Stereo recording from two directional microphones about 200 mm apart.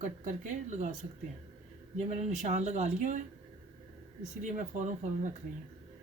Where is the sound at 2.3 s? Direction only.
35° right (ahead or behind).